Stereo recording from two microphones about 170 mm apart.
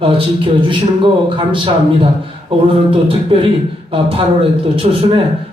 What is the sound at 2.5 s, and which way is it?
Speech, 30° right (ahead or behind).